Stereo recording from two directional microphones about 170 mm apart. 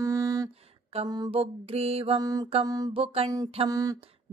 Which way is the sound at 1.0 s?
25° right (ahead or behind).